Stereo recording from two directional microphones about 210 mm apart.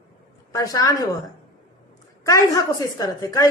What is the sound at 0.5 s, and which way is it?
Speech, 15° left (ahead or behind).